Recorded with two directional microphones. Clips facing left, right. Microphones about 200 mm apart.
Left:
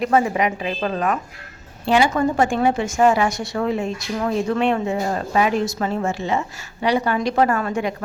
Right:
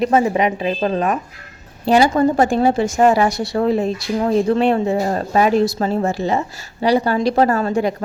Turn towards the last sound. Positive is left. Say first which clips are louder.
# right 4 dB
turn(degrees=-35)  # may be behind; listen again after turning